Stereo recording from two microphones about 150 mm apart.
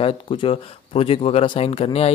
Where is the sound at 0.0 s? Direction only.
40° left (ahead or behind).